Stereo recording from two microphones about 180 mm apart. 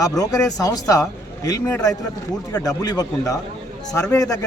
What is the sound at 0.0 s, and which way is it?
A man's voice, 20° left (ahead or behind).